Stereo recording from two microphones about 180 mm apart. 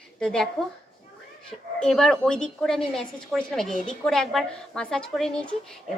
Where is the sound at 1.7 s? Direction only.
5° left (ahead or behind).